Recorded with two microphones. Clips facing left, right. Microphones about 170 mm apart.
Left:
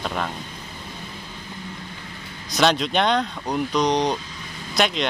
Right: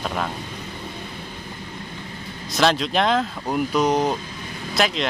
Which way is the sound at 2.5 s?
Centre (ahead or behind).